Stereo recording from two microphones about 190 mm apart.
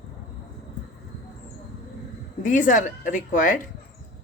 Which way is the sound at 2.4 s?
45° left (ahead or behind).